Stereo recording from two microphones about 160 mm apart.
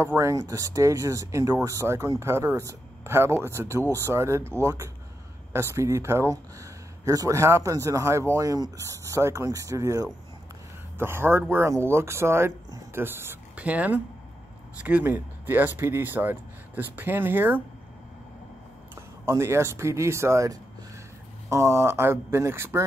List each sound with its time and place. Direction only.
0.0 s speech: 15° right (ahead or behind)
19.2 s speech: 15° right (ahead or behind)